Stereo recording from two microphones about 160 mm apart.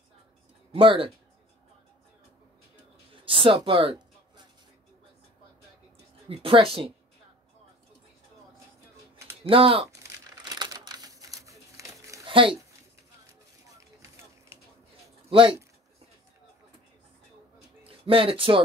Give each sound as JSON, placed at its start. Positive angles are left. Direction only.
{"t": 0.7, "sound": "speech", "side_deg": -35}
{"t": 3.3, "sound": "speech", "side_deg": -35}
{"t": 6.2, "sound": "speech", "side_deg": -35}
{"t": 9.4, "sound": "speech", "side_deg": -35}
{"t": 9.8, "sound": "crumpling", "side_deg": -20}
{"t": 12.3, "sound": "speech", "side_deg": -30}
{"t": 13.3, "sound": "a sound", "side_deg": -20}
{"t": 15.2, "sound": "speech", "side_deg": -30}
{"t": 17.8, "sound": "speech", "side_deg": -35}